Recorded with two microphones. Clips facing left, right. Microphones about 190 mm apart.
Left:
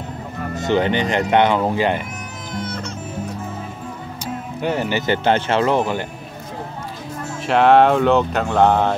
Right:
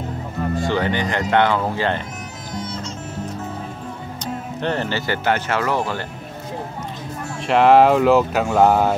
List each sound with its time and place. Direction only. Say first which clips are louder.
0.6 s speech: left 4 dB; 20° left (ahead or behind)
2.6 s music: left 3 dB; 60° left (ahead or behind)
4.2 s speech: left 1 dB; 10° left (ahead or behind)
7.4 s speech: even; centre (ahead or behind)